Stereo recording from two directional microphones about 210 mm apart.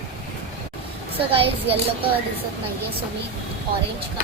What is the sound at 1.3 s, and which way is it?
Speech, 25° right (ahead or behind).